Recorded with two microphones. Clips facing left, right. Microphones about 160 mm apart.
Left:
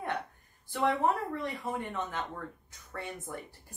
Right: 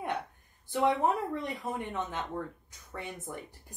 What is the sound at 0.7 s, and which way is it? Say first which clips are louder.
Speech: right 1 dB; 20° right (ahead or behind).